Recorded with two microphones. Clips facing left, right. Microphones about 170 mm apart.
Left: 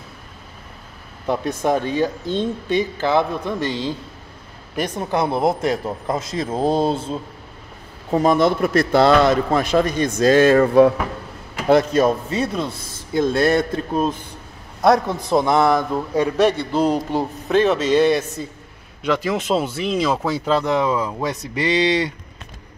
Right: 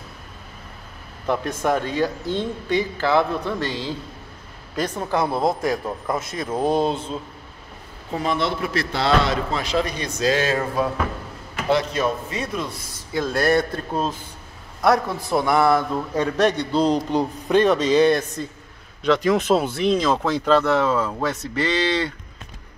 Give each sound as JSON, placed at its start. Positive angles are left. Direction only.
{"t": 1.2, "sound": "a man's voice", "side_deg": 15}
{"t": 8.1, "sound": "a man's voice", "side_deg": 45}
{"t": 11.7, "sound": "a man's voice", "side_deg": 40}
{"t": 13.1, "sound": "a man's voice", "side_deg": 20}